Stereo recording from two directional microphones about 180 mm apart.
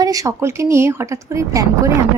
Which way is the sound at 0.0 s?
20° right (ahead or behind).